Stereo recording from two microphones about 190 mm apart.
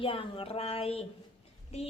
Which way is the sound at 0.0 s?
30° left (ahead or behind).